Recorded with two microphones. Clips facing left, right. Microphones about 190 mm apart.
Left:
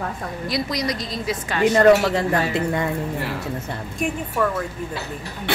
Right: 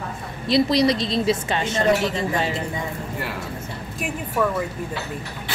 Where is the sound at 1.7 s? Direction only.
65° left (ahead or behind).